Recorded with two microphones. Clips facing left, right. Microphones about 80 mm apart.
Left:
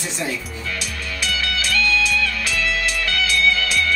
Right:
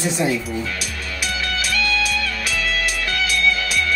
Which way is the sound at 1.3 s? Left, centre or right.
Right.